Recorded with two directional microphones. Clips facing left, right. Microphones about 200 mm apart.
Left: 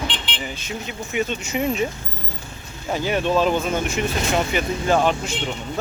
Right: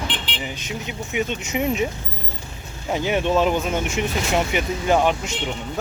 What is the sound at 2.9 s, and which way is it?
Speech, 20° right (ahead or behind).